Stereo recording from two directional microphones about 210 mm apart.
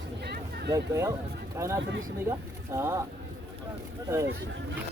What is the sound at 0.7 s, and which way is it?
Speech, 15° right (ahead or behind).